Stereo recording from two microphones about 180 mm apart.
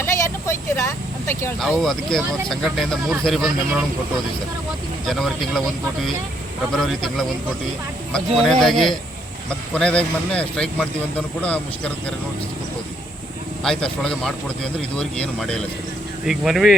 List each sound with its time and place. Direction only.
0.0 s vehicle: 15° left (ahead or behind)
1.5 s speech: centre (ahead or behind)
5.0 s speech: centre (ahead or behind)
11.4 s a man's voice: 5° left (ahead or behind)
13.7 s speech: 5° left (ahead or behind)